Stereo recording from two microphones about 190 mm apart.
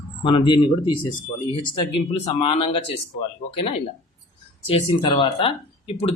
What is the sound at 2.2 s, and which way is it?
Speech, 30° left (ahead or behind).